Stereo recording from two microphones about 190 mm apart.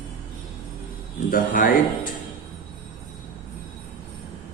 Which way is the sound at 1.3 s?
45° left (ahead or behind).